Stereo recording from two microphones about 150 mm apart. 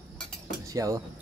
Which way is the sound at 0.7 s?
25° right (ahead or behind).